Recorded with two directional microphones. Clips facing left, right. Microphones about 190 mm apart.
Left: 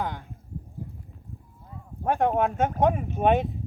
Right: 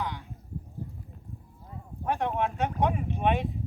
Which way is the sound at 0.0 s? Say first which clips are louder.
Left 3 dB; 50° left (ahead or behind).